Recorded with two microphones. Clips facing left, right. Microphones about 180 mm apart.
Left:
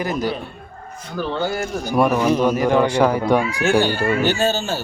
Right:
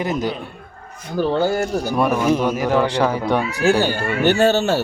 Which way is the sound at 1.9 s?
10° left (ahead or behind).